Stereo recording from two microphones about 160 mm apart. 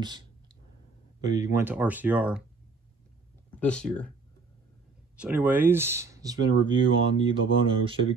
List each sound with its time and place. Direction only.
0.0 s clicking: 25° right (ahead or behind)
1.2 s speech: 20° right (ahead or behind)
3.5 s speech: 5° left (ahead or behind)
5.1 s speech: 10° right (ahead or behind); by 7.9 s 35° right (ahead or behind)